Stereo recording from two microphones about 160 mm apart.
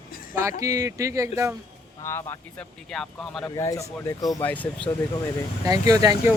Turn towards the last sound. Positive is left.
turn(degrees=-20)  # may be behind; listen again after turning